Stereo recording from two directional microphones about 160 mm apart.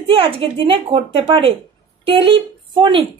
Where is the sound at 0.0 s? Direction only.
35° right (ahead or behind).